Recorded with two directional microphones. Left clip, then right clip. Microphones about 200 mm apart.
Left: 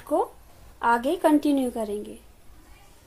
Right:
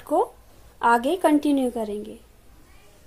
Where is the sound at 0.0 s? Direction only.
20° right (ahead or behind).